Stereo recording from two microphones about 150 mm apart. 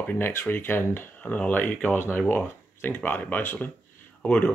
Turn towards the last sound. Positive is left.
turn(degrees=10)  # may be behind; listen again after turning